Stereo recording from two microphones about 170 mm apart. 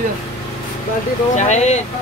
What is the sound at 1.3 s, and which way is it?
Speech, 40° left (ahead or behind).